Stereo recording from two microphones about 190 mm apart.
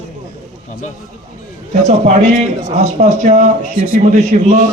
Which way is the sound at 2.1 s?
35° right (ahead or behind).